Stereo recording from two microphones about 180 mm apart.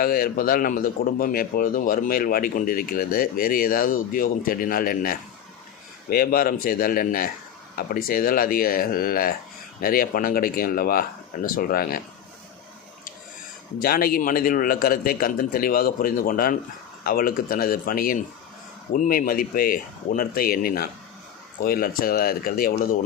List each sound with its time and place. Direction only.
0.0 s a man's voice: 55° left (ahead or behind)
13.7 s a man's voice: 55° left (ahead or behind)